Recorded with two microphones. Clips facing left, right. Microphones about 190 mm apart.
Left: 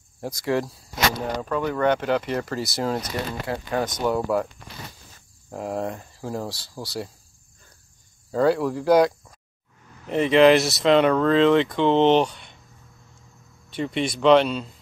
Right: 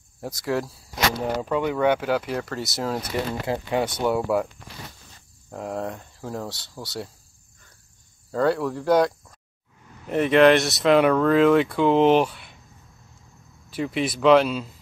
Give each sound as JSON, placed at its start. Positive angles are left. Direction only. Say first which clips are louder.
{"t": 0.2, "sound": "speech", "louder": "left 2 dB", "side_deg": 0}
{"t": 3.4, "sound": "speech", "louder": "even", "side_deg": -15}
{"t": 4.0, "sound": "speech", "louder": "left 1 dB", "side_deg": -5}
{"t": 5.5, "sound": "speech", "louder": "left 2 dB", "side_deg": 0}
{"t": 8.3, "sound": "speech", "louder": "left 2 dB", "side_deg": 0}
{"t": 13.7, "sound": "speech", "louder": "even", "side_deg": -5}